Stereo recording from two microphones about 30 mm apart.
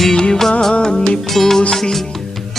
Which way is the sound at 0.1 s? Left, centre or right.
Left.